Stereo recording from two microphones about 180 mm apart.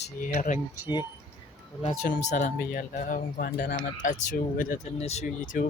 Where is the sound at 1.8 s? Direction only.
50° left (ahead or behind).